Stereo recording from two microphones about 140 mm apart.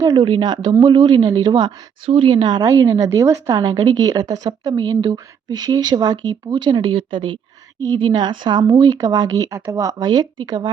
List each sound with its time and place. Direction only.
0.0 s a woman's voice: 25° right (ahead or behind)